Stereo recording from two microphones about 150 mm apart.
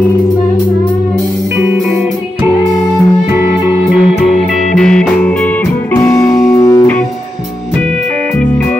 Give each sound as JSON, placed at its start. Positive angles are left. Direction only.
{"t": 3.6, "sound": "music", "side_deg": -15}
{"t": 4.2, "sound": "music", "side_deg": 0}